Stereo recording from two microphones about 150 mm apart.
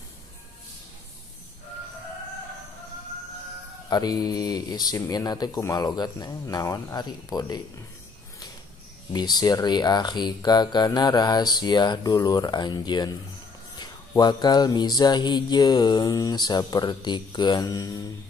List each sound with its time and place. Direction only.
3.9 s mantra: 25° left (ahead or behind)
9.1 s mantra: 25° left (ahead or behind)